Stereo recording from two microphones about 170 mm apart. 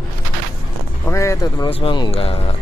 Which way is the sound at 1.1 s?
20° left (ahead or behind).